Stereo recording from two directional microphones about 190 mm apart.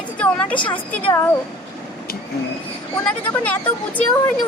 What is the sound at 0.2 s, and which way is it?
Speech, 5° left (ahead or behind).